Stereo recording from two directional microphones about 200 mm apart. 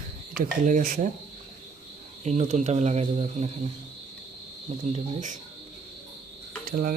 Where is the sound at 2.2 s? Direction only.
35° right (ahead or behind).